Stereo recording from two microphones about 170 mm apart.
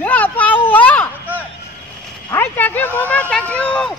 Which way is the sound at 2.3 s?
15° left (ahead or behind).